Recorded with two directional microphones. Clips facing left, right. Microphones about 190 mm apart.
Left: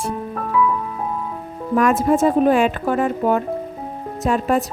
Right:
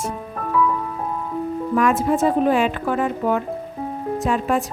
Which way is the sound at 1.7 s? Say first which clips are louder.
Left 3 dB; 45° left (ahead or behind).